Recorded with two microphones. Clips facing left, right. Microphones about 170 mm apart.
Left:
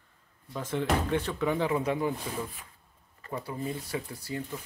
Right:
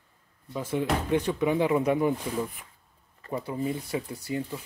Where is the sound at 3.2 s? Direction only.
20° right (ahead or behind).